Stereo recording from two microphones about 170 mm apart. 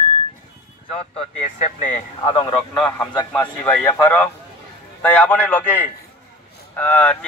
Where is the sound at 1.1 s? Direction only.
40° left (ahead or behind).